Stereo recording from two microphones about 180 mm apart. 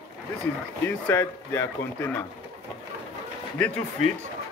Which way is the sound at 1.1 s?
10° left (ahead or behind).